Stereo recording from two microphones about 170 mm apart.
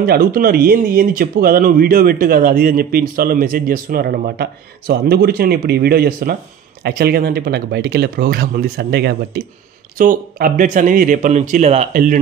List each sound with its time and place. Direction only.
0.0 s speech: 65° right (ahead or behind)
9.9 s a man's voice: 55° right (ahead or behind)
11.9 s speech: 55° right (ahead or behind)